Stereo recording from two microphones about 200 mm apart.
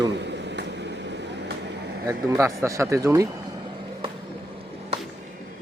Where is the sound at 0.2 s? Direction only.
60° right (ahead or behind).